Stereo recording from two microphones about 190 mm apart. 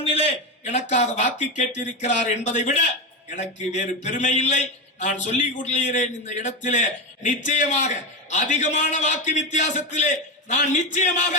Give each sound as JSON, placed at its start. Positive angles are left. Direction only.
{"t": 0.0, "sound": "a man's voice", "side_deg": 35}